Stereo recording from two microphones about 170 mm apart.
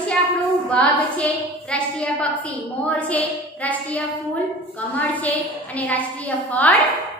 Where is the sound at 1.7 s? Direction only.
5° left (ahead or behind).